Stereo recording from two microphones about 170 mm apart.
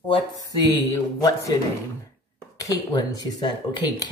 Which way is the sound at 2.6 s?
20° left (ahead or behind).